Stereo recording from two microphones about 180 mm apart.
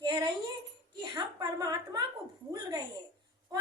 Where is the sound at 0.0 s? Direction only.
25° right (ahead or behind).